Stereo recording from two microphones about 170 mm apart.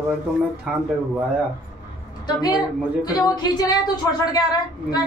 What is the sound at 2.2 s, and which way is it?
Speech, 25° left (ahead or behind).